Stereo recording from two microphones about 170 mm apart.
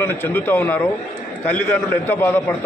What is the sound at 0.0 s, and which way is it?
A man's voice, 10° left (ahead or behind).